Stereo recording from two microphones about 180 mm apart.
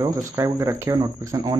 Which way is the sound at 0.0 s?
15° right (ahead or behind).